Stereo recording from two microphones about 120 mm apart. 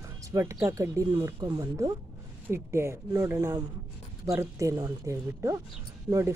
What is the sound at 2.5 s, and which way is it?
Speech, 20° right (ahead or behind).